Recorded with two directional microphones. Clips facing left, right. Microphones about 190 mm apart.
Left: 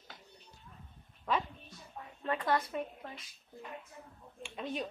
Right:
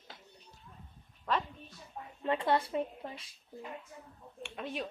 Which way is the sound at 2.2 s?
25° right (ahead or behind).